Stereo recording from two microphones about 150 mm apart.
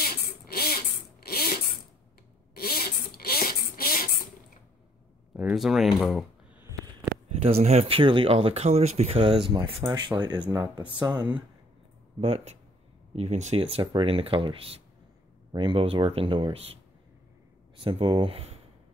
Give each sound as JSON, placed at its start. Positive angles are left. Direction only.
{"t": 0.0, "sound": "a sound", "side_deg": 90}
{"t": 5.3, "sound": "speech", "side_deg": -5}
{"t": 7.4, "sound": "speech", "side_deg": -45}
{"t": 12.2, "sound": "speech", "side_deg": -45}
{"t": 17.7, "sound": "speech", "side_deg": -35}